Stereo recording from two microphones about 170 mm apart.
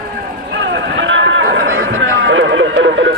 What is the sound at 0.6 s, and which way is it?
Speech, 90° right.